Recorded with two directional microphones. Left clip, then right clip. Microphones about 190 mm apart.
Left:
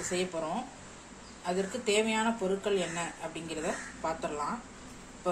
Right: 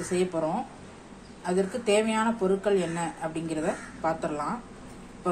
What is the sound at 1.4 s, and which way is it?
A woman's voice, 15° right (ahead or behind).